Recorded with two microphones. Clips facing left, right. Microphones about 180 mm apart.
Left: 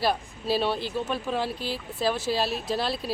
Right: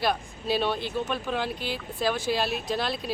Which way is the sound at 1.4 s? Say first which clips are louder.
Left 1 dB; 30° left (ahead or behind).